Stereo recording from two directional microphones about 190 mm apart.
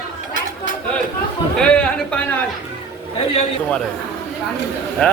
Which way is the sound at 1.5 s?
5° left (ahead or behind).